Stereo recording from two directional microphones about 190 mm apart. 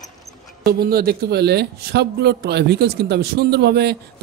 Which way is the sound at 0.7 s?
55° right (ahead or behind).